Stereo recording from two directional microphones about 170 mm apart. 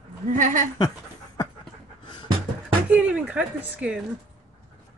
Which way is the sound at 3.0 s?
5° right (ahead or behind).